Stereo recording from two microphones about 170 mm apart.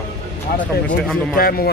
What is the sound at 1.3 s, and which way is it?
Speech, 60° left (ahead or behind).